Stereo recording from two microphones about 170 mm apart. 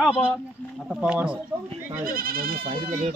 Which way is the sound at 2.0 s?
60° right (ahead or behind).